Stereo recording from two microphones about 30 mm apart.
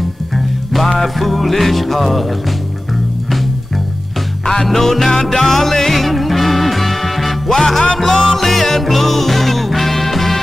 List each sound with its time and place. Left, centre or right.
0.7 s music: centre
4.6 s music: centre
7.8 s music: centre
8.1 s music: centre